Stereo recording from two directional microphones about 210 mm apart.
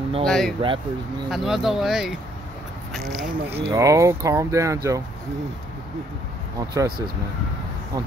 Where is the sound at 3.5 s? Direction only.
15° right (ahead or behind).